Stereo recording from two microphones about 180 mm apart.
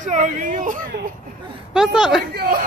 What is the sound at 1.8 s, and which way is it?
Speech, 5° right (ahead or behind).